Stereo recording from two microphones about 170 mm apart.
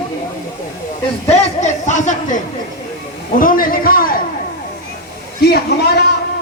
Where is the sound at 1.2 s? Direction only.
40° left (ahead or behind).